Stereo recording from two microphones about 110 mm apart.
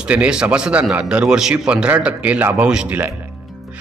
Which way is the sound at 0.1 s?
10° right (ahead or behind).